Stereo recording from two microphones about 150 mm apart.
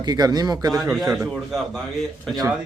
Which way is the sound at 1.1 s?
Centre (ahead or behind).